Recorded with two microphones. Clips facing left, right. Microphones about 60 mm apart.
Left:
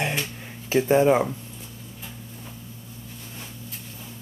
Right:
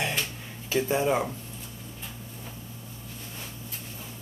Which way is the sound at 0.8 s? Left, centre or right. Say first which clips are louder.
Left 8 dB; left.